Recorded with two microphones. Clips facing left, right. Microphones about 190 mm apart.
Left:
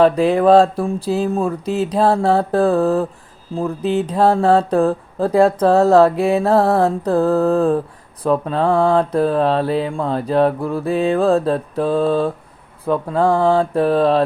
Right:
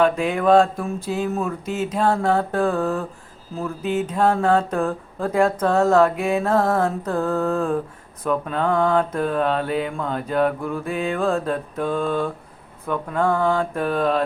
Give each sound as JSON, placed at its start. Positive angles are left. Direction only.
{"t": 0.0, "sound": "speech", "side_deg": 35}